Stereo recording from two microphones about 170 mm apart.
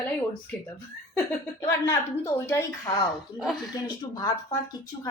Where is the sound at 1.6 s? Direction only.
15° left (ahead or behind).